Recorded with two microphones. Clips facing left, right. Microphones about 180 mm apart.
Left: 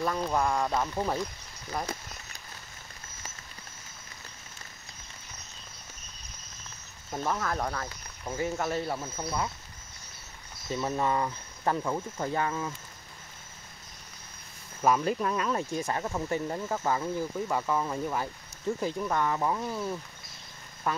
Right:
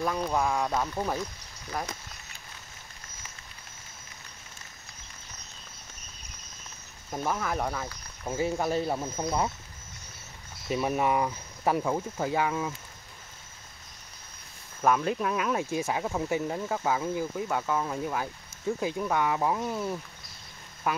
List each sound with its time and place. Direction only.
0.0 s speech: centre (ahead or behind)
7.1 s speech: 10° right (ahead or behind)
8.4 s speech: 15° right (ahead or behind)
10.7 s speech: 15° right (ahead or behind)
14.8 s speech: 5° left (ahead or behind)